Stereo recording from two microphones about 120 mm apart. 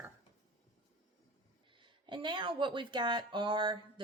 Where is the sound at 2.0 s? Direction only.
40° right (ahead or behind).